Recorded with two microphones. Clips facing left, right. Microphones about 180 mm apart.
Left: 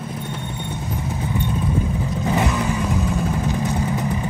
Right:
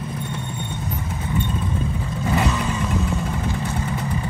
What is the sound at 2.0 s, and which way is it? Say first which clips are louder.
Vehicle: left 2 dB; 15° left (ahead or behind).